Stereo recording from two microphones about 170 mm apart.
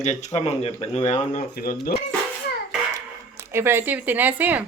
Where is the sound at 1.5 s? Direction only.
60° left (ahead or behind).